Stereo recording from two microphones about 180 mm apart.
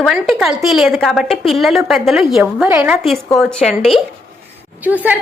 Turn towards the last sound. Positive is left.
turn(degrees=-10)  # may be behind; listen again after turning